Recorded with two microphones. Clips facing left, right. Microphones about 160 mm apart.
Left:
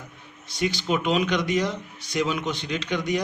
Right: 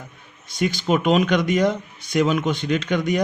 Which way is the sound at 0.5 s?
50° right (ahead or behind).